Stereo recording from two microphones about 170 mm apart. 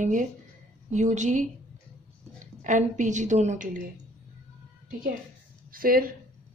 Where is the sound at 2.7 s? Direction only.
45° right (ahead or behind).